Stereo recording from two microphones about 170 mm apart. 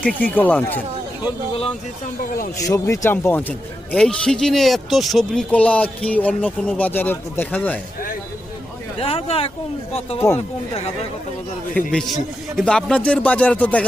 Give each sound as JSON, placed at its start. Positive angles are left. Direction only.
{"t": 0.0, "sound": "speech", "side_deg": 10}
{"t": 2.6, "sound": "speech", "side_deg": 20}
{"t": 9.0, "sound": "speech", "side_deg": 35}
{"t": 11.9, "sound": "a man's voice", "side_deg": 5}